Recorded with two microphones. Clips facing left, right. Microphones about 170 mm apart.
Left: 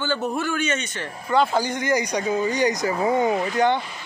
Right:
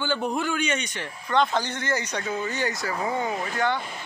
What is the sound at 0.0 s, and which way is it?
Speech, 15° right (ahead or behind).